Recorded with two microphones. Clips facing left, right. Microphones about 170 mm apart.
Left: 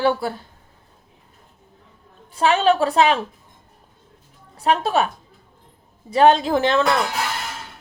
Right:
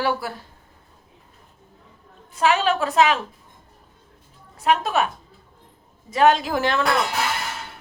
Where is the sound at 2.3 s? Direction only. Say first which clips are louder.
Left 3 dB; 30° left (ahead or behind).